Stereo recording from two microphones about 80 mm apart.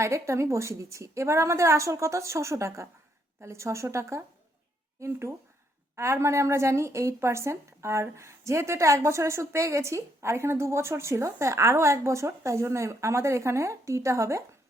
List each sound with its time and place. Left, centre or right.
0.0 s a woman's voice: right